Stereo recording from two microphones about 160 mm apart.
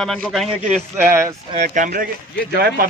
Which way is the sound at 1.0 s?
15° right (ahead or behind).